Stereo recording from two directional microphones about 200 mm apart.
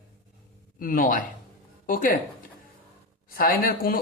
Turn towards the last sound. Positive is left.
turn(degrees=45)  # may be behind; listen again after turning